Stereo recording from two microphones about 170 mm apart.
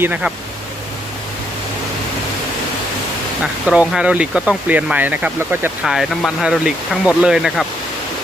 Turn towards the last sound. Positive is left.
turn(degrees=-5)  # may be behind; listen again after turning